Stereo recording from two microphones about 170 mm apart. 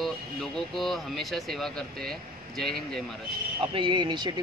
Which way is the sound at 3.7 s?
30° right (ahead or behind).